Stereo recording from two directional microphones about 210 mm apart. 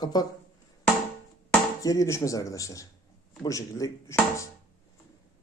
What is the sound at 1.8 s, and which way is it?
Speech, 15° left (ahead or behind).